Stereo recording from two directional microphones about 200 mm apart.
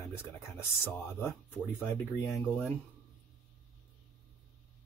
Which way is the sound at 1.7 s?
15° left (ahead or behind).